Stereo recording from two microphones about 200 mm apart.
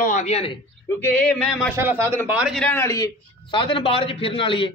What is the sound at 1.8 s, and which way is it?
A man's voice, 10° right (ahead or behind).